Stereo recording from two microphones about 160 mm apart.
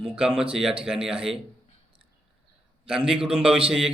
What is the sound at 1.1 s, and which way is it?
Speech, 35° right (ahead or behind).